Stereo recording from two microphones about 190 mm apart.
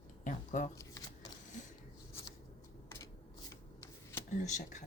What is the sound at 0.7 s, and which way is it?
Speech, 15° left (ahead or behind).